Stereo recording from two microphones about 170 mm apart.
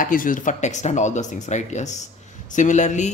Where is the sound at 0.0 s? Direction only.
55° left (ahead or behind).